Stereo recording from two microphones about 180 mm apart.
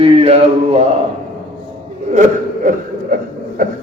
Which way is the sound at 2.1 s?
45° right (ahead or behind).